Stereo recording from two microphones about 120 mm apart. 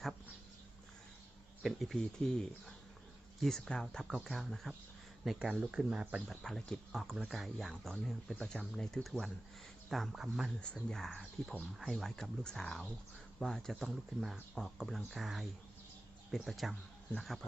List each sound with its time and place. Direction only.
1.6 s speech: centre (ahead or behind)
6.2 s speech: 5° left (ahead or behind)
10.6 s speech: 10° left (ahead or behind)